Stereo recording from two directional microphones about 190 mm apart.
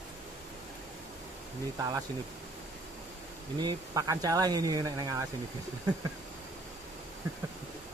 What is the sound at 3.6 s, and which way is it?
Speech, 20° right (ahead or behind).